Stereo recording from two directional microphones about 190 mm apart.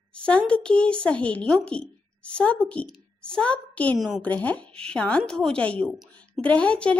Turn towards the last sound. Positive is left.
turn(degrees=5)  # may be behind; listen again after turning